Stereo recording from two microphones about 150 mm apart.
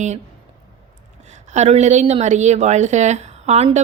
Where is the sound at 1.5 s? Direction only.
50° right (ahead or behind).